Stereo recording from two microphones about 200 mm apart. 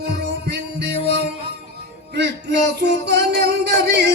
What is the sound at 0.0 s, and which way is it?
Music, 55° right (ahead or behind).